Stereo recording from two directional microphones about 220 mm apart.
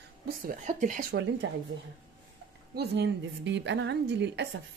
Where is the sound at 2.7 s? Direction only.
50° right (ahead or behind).